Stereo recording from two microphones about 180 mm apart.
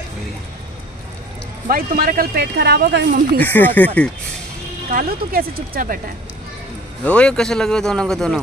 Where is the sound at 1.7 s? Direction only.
50° right (ahead or behind).